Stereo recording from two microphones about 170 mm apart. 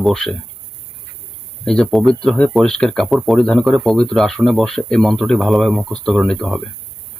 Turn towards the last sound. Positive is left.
turn(degrees=0)  # may be behind; listen again after turning